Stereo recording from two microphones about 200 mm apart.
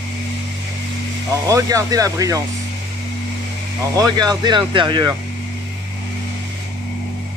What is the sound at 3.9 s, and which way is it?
Speech, 20° right (ahead or behind).